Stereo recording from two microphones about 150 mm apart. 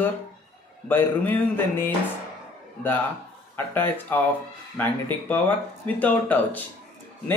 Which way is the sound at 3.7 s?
15° left (ahead or behind).